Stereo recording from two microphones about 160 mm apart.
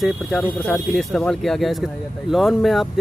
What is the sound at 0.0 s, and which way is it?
Speech, centre (ahead or behind).